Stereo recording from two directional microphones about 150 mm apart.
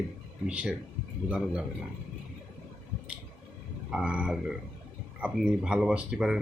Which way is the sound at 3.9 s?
5° right (ahead or behind).